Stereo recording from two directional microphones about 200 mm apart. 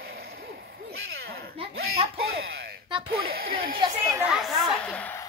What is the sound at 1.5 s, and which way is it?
Speech, 30° right (ahead or behind).